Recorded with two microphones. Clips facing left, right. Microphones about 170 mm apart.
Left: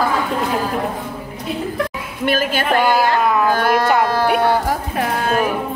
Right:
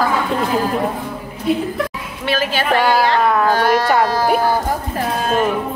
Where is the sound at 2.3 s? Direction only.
50° left (ahead or behind).